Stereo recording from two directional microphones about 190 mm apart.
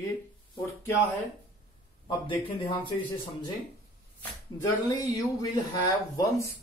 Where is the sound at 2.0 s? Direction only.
25° left (ahead or behind).